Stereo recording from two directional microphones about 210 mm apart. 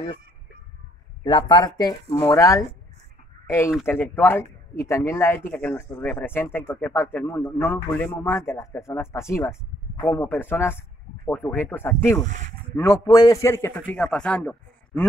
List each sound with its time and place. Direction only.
1.2 s a man's voice: 20° left (ahead or behind); by 15.0 s 5° left (ahead or behind)